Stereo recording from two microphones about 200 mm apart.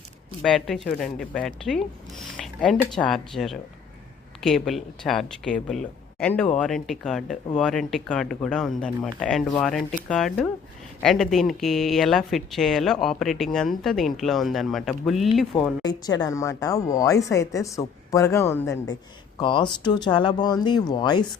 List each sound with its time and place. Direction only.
0.4 s speech: 5° left (ahead or behind)
15.8 s speech: 20° left (ahead or behind)
19.4 s speech: 25° left (ahead or behind)